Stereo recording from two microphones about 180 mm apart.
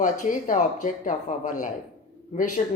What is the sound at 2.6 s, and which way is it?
Speech, 40° left (ahead or behind).